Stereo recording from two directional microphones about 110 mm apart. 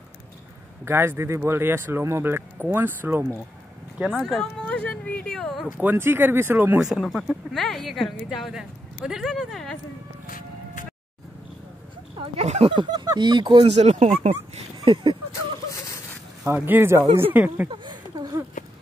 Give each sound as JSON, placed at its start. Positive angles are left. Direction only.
{"t": 0.8, "sound": "speech", "side_deg": -20}
{"t": 4.1, "sound": "a sound", "side_deg": 5}
{"t": 5.8, "sound": "speech", "side_deg": -20}
{"t": 6.8, "sound": "speech", "side_deg": 0}
{"t": 12.4, "sound": "speech", "side_deg": -75}
{"t": 12.7, "sound": "speech", "side_deg": -40}
{"t": 13.7, "sound": "speech", "side_deg": -80}
{"t": 14.9, "sound": "speech", "side_deg": -50}
{"t": 16.4, "sound": "speech", "side_deg": -20}
{"t": 17.6, "sound": "a sound", "side_deg": -45}